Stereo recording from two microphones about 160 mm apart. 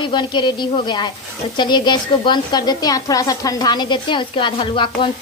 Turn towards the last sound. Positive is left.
turn(degrees=30)  # may be behind; listen again after turning